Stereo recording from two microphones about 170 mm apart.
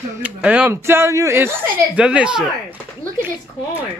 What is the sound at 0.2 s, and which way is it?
Speech, 10° right (ahead or behind).